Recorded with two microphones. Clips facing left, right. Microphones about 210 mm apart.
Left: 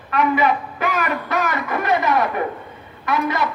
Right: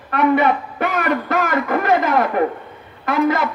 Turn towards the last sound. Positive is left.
turn(degrees=-50)  # may be behind; listen again after turning